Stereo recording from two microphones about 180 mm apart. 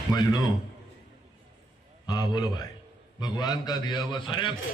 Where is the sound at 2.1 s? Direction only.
25° left (ahead or behind).